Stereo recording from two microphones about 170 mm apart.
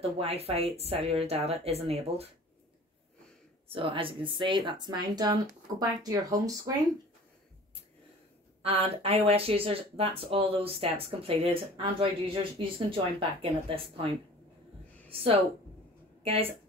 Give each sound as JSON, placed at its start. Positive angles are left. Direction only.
{"t": 0.0, "sound": "speech", "side_deg": -35}
{"t": 3.6, "sound": "speech", "side_deg": -30}
{"t": 8.6, "sound": "speech", "side_deg": -35}